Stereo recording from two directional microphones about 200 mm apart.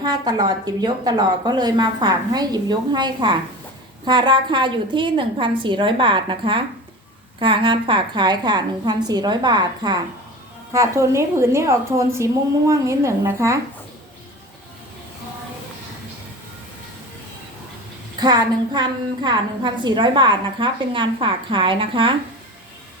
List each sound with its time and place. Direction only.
0.0 s a woman's voice: 20° right (ahead or behind)
18.2 s a woman's voice: 20° right (ahead or behind)